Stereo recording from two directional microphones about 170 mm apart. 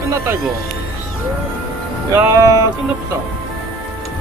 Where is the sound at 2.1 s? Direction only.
20° right (ahead or behind).